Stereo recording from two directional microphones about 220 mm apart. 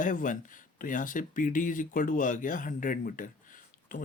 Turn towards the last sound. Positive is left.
turn(degrees=35)  # may be behind; listen again after turning